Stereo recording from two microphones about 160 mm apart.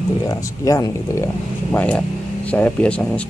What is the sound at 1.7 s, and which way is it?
Speech, 10° left (ahead or behind).